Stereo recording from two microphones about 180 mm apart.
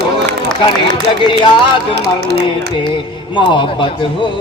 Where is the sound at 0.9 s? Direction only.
25° left (ahead or behind).